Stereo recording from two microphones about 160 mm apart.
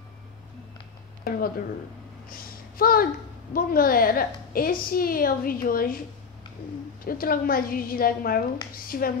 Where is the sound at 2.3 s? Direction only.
65° left (ahead or behind).